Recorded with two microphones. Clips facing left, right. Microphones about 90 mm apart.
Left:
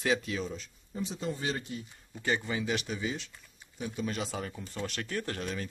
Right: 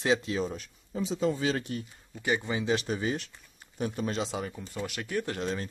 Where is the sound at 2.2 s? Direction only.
15° right (ahead or behind).